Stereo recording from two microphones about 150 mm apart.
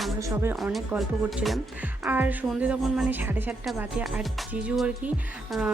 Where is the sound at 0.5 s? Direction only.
Centre (ahead or behind).